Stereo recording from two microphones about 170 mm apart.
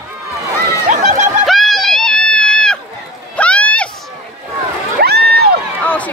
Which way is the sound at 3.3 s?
10° left (ahead or behind).